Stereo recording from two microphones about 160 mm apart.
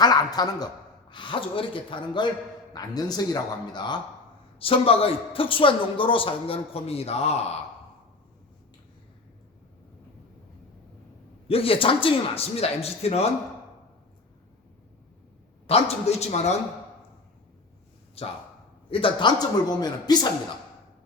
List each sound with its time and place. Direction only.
0.0 s a sound: 25° left (ahead or behind)
1.1 s a man's voice: 30° left (ahead or behind)
11.4 s a man's voice: 35° left (ahead or behind)
15.6 s a man's voice: 40° left (ahead or behind)
18.9 s a man's voice: 35° left (ahead or behind)